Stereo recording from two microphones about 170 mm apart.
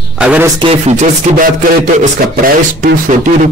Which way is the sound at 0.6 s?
40° right (ahead or behind).